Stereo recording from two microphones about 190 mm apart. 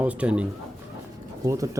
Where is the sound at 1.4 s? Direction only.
15° right (ahead or behind).